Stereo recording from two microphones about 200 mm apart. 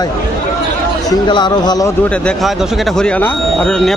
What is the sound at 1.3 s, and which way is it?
Speech, 20° left (ahead or behind).